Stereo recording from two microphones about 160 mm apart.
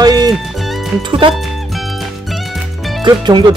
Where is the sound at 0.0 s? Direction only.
25° right (ahead or behind).